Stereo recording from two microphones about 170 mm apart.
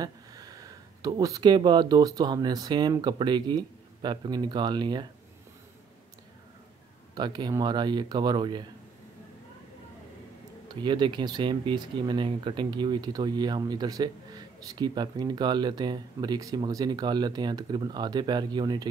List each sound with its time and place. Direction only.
0.0 s speech: 20° right (ahead or behind)
7.2 s speech: 25° right (ahead or behind)
10.7 s speech: 25° right (ahead or behind)